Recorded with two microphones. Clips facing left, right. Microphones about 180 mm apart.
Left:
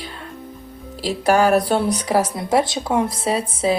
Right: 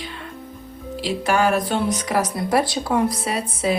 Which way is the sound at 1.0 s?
40° left (ahead or behind).